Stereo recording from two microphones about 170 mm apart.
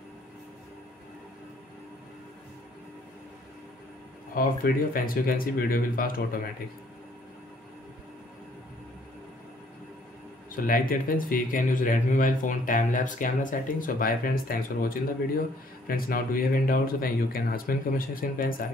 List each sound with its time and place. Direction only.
4.4 s speech: 60° left (ahead or behind)
10.5 s speech: 55° left (ahead or behind)